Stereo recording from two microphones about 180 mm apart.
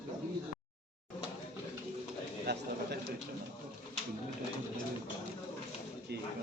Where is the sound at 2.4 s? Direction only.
65° right (ahead or behind).